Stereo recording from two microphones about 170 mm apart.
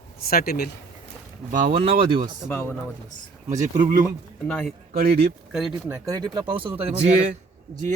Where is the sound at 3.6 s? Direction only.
50° right (ahead or behind).